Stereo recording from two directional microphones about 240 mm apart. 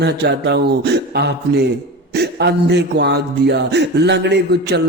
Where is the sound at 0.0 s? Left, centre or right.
Right.